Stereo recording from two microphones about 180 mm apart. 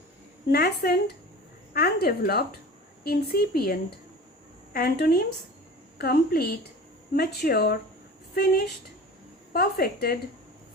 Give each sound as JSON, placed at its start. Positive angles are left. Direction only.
{"t": 0.4, "sound": "speech", "side_deg": 60}
{"t": 9.5, "sound": "speech", "side_deg": 60}